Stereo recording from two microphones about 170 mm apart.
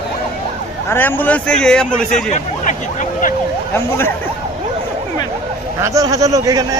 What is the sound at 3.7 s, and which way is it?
Speech, 15° left (ahead or behind).